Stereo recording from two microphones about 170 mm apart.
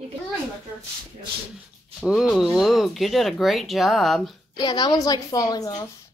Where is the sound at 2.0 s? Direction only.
Centre (ahead or behind).